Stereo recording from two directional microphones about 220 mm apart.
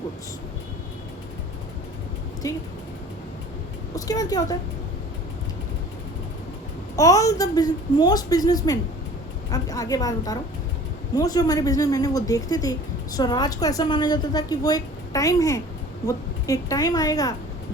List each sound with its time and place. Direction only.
2.4 s a woman's voice: 15° left (ahead or behind)
3.9 s a woman's voice: 15° left (ahead or behind)
6.9 s a woman's voice: 15° left (ahead or behind)